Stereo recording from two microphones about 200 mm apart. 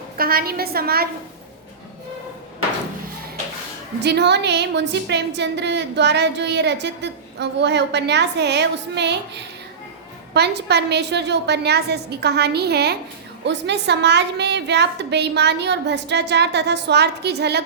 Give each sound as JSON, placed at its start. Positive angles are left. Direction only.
{"t": 0.2, "sound": "a woman's voice", "side_deg": -50}
{"t": 4.0, "sound": "a woman's voice", "side_deg": -60}